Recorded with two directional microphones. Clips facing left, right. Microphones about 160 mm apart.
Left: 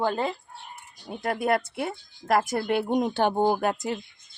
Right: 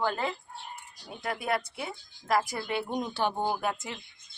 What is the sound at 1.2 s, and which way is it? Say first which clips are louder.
Speech: left 6 dB; 50° left (ahead or behind).